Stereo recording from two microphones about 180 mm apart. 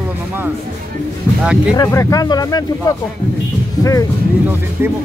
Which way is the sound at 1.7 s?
20° left (ahead or behind).